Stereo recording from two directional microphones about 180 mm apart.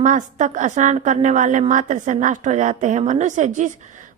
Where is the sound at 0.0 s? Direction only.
45° right (ahead or behind).